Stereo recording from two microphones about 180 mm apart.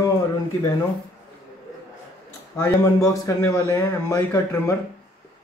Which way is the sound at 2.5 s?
15° left (ahead or behind).